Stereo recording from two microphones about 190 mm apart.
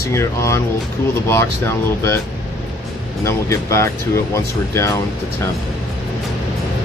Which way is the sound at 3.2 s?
15° left (ahead or behind).